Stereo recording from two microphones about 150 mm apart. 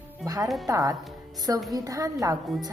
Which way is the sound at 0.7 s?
25° right (ahead or behind).